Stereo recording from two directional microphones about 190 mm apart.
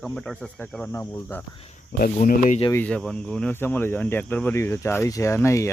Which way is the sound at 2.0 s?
45° left (ahead or behind).